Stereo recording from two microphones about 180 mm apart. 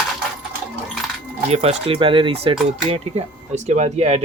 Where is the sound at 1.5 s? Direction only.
35° right (ahead or behind).